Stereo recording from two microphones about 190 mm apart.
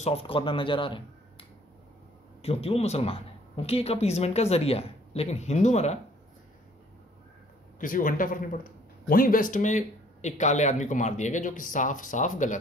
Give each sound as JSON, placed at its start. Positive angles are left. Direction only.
{"t": 0.0, "sound": "speech", "side_deg": 30}
{"t": 2.4, "sound": "a woman's voice", "side_deg": 30}
{"t": 7.8, "sound": "a man's voice", "side_deg": 45}